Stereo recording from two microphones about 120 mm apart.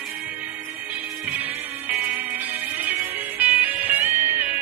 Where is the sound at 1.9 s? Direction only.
10° right (ahead or behind).